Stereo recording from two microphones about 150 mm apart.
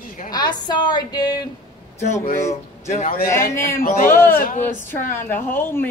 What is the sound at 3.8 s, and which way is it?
Speech, 65° left (ahead or behind).